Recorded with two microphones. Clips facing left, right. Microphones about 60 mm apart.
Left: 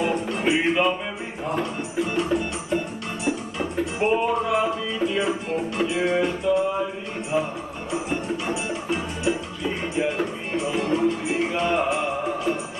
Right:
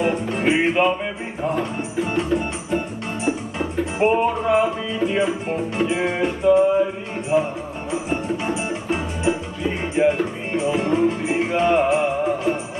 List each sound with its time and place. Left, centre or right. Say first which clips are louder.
0.0 s music: right 3 dB; right
4.0 s music: right 4 dB; right
8.9 s music: right 3 dB; right